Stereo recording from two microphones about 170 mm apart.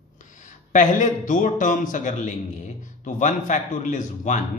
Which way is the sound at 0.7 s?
50° left (ahead or behind).